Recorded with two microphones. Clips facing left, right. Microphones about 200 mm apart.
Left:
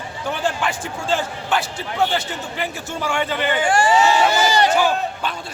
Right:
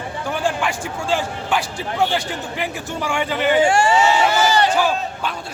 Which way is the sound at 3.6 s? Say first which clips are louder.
Right 2 dB; 25° right (ahead or behind).